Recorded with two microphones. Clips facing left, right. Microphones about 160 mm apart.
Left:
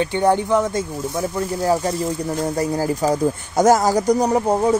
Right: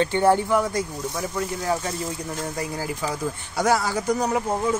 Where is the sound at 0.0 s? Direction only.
15° left (ahead or behind).